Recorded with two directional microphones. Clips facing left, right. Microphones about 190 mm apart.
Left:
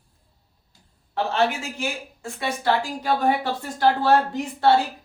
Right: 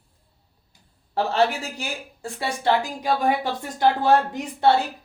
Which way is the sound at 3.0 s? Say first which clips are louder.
Even; 15° right (ahead or behind).